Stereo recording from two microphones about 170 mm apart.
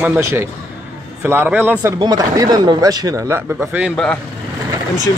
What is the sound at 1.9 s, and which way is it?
Speech, 25° right (ahead or behind).